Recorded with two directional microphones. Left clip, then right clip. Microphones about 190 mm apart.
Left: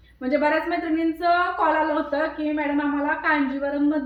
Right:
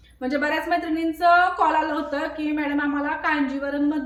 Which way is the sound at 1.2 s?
20° right (ahead or behind).